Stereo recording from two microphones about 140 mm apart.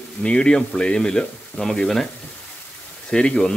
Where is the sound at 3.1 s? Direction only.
5° left (ahead or behind).